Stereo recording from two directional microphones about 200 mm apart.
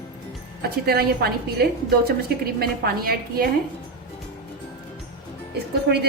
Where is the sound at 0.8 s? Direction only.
50° right (ahead or behind).